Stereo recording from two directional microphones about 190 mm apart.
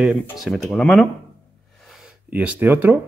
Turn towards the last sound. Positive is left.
turn(degrees=-10)  # may be behind; listen again after turning